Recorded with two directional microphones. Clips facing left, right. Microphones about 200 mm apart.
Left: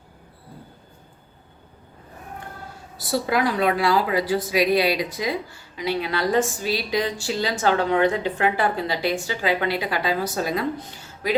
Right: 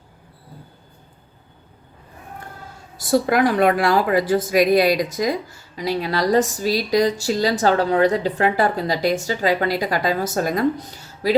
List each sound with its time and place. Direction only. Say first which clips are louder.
3.0 s a woman's voice: right 5 dB; 50° right (ahead or behind)